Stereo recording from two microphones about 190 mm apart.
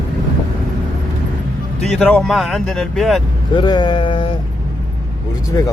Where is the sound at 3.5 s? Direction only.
25° left (ahead or behind).